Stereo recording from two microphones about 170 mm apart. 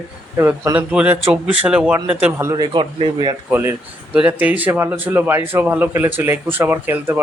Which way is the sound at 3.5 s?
10° right (ahead or behind).